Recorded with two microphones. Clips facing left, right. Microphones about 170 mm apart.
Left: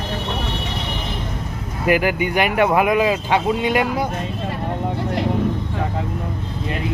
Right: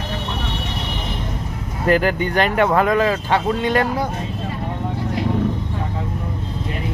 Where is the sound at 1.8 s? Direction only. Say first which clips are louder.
Right 1 dB; 10° left (ahead or behind).